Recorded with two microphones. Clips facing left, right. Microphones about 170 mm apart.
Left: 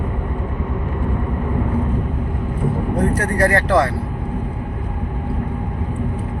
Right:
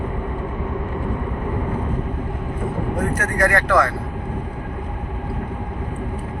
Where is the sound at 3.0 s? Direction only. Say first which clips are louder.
Left 3 dB; 30° left (ahead or behind).